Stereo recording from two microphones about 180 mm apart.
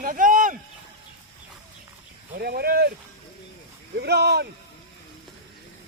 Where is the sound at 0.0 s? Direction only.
50° right (ahead or behind).